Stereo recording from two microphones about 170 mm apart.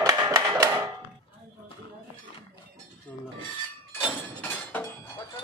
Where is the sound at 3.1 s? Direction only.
10° left (ahead or behind).